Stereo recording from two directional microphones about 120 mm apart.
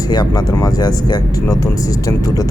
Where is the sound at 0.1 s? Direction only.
35° left (ahead or behind).